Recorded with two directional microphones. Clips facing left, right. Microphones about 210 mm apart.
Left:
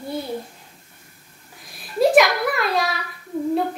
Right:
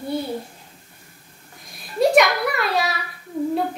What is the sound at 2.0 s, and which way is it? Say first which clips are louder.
Speech: left 1 dB; centre (ahead or behind).